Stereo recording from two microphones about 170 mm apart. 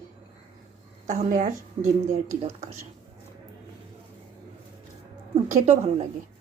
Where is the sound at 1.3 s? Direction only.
50° right (ahead or behind).